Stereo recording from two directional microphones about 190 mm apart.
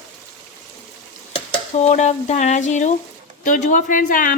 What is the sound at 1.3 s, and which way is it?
A woman's voice, 35° left (ahead or behind).